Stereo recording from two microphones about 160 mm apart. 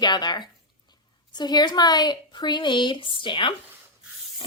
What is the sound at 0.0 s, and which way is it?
A woman's voice, 25° left (ahead or behind).